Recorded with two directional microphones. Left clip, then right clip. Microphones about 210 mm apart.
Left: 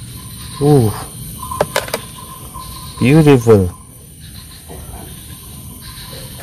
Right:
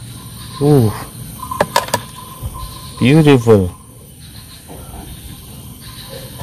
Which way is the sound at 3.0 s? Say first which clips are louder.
Even; centre (ahead or behind).